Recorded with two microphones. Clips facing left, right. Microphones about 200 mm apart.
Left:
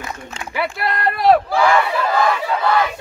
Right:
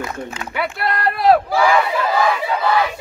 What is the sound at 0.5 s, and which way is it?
Speech, centre (ahead or behind).